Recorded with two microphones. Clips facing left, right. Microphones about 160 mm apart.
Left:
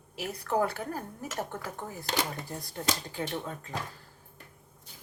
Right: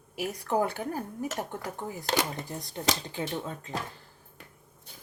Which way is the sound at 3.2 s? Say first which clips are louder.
Right 1 dB; 25° right (ahead or behind).